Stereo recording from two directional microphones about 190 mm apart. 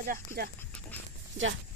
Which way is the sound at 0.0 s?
50° right (ahead or behind).